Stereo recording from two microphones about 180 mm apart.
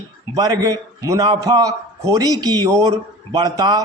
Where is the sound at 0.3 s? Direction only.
20° right (ahead or behind).